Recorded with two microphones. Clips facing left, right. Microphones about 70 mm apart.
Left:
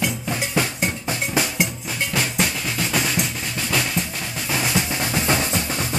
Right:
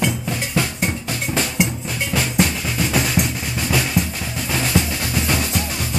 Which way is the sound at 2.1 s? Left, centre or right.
Centre.